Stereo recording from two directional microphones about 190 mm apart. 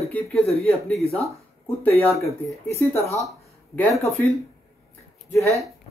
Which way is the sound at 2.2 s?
15° left (ahead or behind).